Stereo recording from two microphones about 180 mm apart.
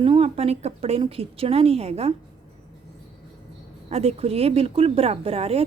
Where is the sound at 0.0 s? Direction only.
35° right (ahead or behind).